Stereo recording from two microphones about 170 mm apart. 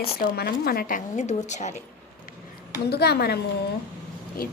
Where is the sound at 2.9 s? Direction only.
70° left (ahead or behind).